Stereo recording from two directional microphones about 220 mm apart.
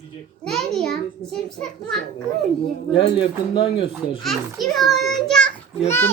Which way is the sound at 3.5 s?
25° left (ahead or behind).